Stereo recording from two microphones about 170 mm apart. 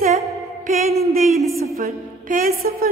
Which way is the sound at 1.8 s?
55° right (ahead or behind).